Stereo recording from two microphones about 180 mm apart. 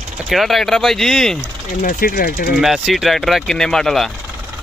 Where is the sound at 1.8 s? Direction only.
50° left (ahead or behind).